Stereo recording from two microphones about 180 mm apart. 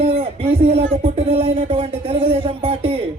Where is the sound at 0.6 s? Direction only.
30° right (ahead or behind).